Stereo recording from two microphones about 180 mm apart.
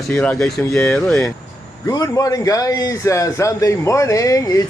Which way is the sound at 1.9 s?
20° left (ahead or behind).